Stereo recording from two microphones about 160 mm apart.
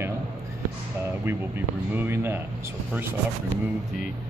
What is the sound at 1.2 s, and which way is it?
Speech, 10° right (ahead or behind).